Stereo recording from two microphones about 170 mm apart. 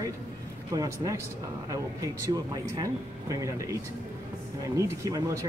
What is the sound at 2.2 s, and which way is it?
Speech, 20° right (ahead or behind).